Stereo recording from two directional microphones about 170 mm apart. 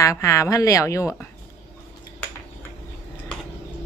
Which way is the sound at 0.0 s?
20° left (ahead or behind).